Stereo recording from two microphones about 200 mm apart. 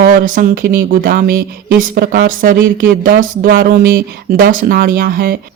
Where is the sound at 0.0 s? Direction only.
45° right (ahead or behind).